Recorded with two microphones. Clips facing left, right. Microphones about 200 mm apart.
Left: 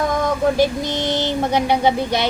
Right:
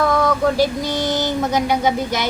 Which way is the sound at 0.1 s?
20° left (ahead or behind).